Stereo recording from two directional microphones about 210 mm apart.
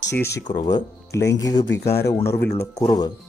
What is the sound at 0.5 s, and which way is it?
Speech, 20° left (ahead or behind).